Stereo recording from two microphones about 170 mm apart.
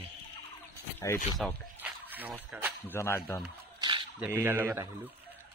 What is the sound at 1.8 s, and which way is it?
Speech, 10° right (ahead or behind).